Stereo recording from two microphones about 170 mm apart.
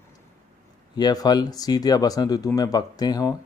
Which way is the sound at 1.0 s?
25° left (ahead or behind).